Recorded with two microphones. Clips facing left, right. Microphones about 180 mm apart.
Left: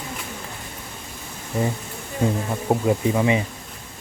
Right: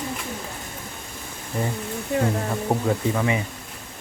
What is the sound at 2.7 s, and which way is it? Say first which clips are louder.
Speech: left 4 dB; 15° left (ahead or behind).